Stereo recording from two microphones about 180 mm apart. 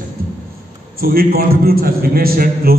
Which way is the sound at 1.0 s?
55° right (ahead or behind).